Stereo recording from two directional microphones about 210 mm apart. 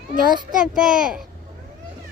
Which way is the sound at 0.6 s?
5° right (ahead or behind).